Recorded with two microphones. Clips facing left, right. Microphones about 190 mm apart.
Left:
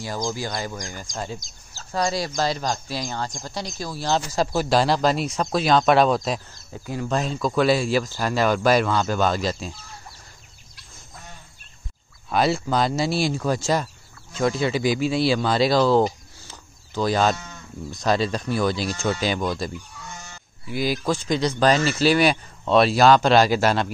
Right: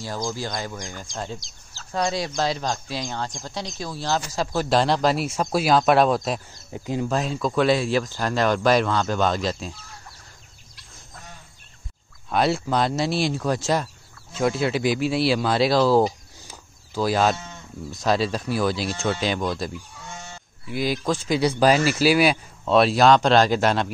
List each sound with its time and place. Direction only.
0.0 s speech: 15° left (ahead or behind); by 6.4 s centre (ahead or behind)
6.7 s speech: 20° right (ahead or behind)
7.1 s speech: centre (ahead or behind)
12.3 s speech: centre (ahead or behind)
20.1 s goat: 25° right (ahead or behind)
20.6 s speech: centre (ahead or behind)